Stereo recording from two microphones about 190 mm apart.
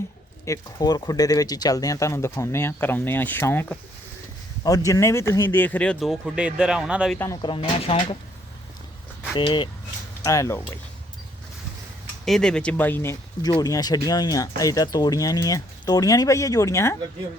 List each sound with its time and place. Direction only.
0.4 s speech: 20° left (ahead or behind); by 7.2 s 5° right (ahead or behind)
7.4 s speech: 25° left (ahead or behind)
9.4 s speech: 25° left (ahead or behind)
12.2 s speech: 5° left (ahead or behind)